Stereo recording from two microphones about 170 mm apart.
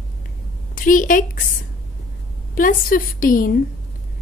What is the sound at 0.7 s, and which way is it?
Speech, 55° left (ahead or behind).